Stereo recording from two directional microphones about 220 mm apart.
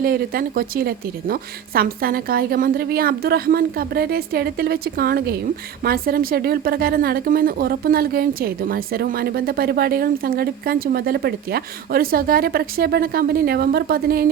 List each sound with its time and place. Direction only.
0.0 s a woman's voice: 40° right (ahead or behind)